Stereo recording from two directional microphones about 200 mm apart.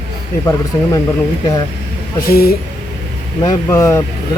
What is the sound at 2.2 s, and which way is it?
Speech, 50° left (ahead or behind).